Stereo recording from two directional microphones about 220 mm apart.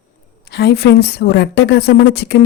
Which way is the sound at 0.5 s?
45° left (ahead or behind).